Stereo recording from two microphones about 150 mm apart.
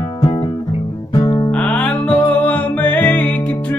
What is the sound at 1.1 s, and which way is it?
Music, 30° left (ahead or behind).